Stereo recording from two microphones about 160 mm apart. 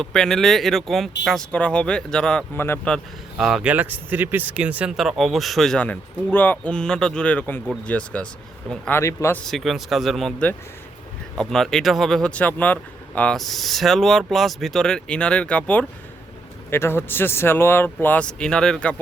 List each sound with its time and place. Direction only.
0.0 s speech: 5° left (ahead or behind)
9.0 s speech: 15° left (ahead or behind)
9.4 s speech: centre (ahead or behind)
11.3 s speech: 5° left (ahead or behind)